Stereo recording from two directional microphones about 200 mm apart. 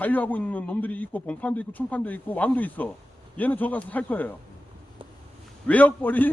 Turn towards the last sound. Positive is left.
turn(degrees=10)  # may be behind; listen again after turning